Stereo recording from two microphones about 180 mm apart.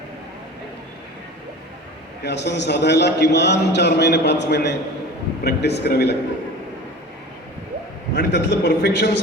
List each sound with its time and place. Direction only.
2.2 s a man's voice: 70° left (ahead or behind)
8.1 s a man's voice: 70° left (ahead or behind)